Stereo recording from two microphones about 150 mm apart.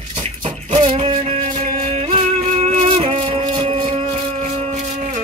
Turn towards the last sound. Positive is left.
turn(degrees=-40)  # may be behind; listen again after turning